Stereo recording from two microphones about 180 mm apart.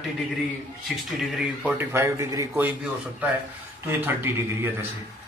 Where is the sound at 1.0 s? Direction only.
Centre (ahead or behind).